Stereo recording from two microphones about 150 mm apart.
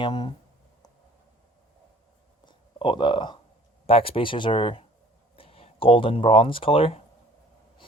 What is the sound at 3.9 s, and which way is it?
Speech, 40° left (ahead or behind).